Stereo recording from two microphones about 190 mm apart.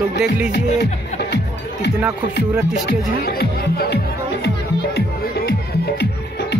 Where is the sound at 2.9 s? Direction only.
55° left (ahead or behind).